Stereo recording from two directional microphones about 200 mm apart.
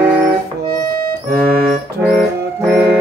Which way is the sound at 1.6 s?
Centre (ahead or behind).